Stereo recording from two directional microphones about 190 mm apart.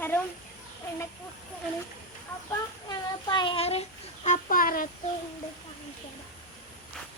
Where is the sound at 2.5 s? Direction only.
20° left (ahead or behind); by 4.9 s 45° left (ahead or behind).